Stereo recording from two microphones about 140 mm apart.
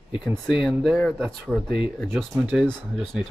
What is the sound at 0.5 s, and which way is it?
Speech, centre (ahead or behind).